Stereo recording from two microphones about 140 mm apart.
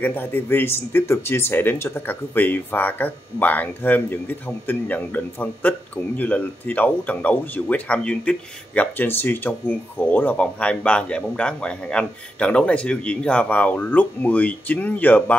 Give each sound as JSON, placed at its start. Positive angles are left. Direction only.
{"t": 0.0, "sound": "speech", "side_deg": 15}